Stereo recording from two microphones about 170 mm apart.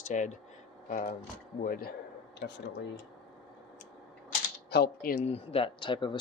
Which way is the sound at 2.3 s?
80° left.